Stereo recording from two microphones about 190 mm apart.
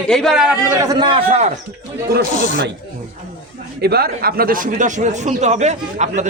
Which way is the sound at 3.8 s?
55° right (ahead or behind).